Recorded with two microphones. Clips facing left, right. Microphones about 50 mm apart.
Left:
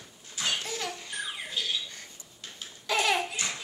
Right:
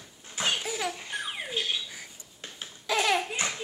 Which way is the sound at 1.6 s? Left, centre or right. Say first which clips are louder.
Right 2 dB; right.